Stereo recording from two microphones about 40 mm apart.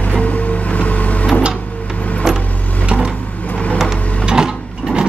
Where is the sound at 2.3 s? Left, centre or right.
Centre.